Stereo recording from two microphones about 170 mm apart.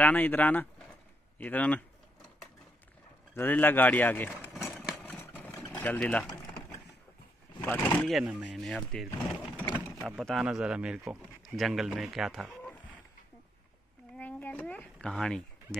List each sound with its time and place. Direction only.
0.0 s speech: 10° left (ahead or behind)
3.3 s speech: 10° left (ahead or behind)
4.7 s vehicle: centre (ahead or behind)
6.2 s a sound: 20° left (ahead or behind)
7.6 s speech: 10° left (ahead or behind)
8.1 s speech: 5° right (ahead or behind)
14.1 s a sound: 10° left (ahead or behind)